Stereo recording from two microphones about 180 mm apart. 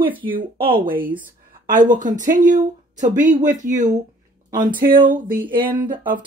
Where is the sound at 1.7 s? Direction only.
45° right (ahead or behind).